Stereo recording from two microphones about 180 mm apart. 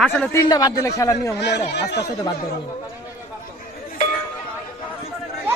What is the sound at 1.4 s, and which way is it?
Speech, 70° left (ahead or behind).